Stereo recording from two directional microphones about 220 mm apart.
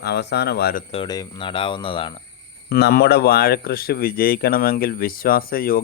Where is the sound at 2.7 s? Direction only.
45° left (ahead or behind).